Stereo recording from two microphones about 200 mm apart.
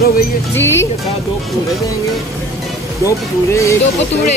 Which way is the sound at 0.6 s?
15° left (ahead or behind).